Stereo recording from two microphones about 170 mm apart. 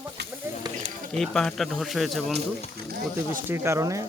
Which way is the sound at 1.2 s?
Centre (ahead or behind).